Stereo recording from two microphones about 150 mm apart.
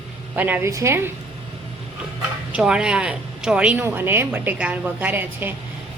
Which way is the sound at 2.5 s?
5° right (ahead or behind).